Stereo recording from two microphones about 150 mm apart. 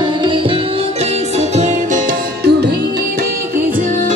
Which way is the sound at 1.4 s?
50° right (ahead or behind).